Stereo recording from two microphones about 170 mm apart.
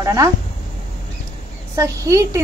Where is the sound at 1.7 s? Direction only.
20° right (ahead or behind).